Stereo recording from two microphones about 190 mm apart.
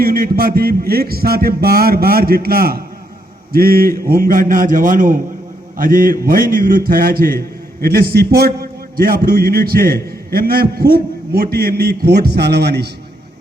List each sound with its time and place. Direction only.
0.0 s a man's voice: 50° right (ahead or behind)